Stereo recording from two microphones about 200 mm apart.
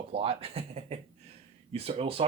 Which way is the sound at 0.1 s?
30° right (ahead or behind).